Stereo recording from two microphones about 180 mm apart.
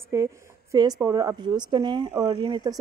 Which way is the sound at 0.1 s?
20° right (ahead or behind).